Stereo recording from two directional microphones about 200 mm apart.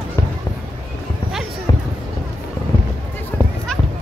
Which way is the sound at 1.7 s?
20° left (ahead or behind).